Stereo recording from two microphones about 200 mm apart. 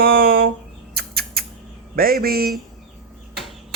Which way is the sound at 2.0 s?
50° right (ahead or behind).